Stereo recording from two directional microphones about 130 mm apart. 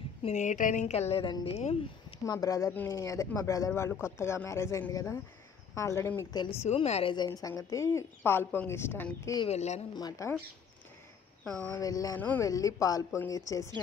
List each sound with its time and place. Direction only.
0.2 s a woman's voice: 65° left (ahead or behind)
2.2 s speech: 25° left (ahead or behind)
2.7 s speech: 15° left (ahead or behind)
3.0 s speech: 25° left (ahead or behind)
6.5 s a woman's voice: 50° left (ahead or behind)
7.2 s speech: 30° left (ahead or behind)
9.5 s a woman's voice: 55° left (ahead or behind)
9.9 s speech: 30° left (ahead or behind)
11.4 s speech: 5° left (ahead or behind)
11.7 s speech: 25° left (ahead or behind)